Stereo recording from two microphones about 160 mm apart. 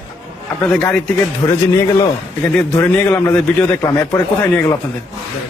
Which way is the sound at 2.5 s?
15° left (ahead or behind).